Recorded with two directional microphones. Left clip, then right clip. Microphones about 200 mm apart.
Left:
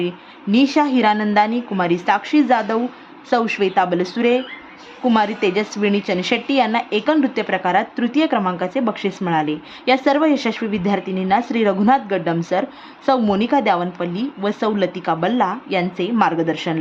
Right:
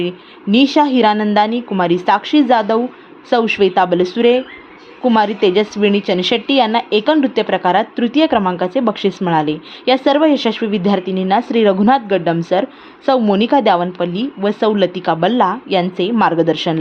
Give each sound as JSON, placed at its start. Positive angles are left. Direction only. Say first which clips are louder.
{"t": 0.5, "sound": "a woman's voice", "louder": "right 4 dB", "side_deg": -15}